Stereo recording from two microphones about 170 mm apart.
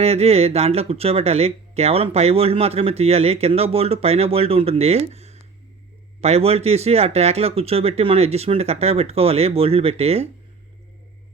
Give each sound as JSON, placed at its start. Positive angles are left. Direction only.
{"t": 0.0, "sound": "speech", "side_deg": -40}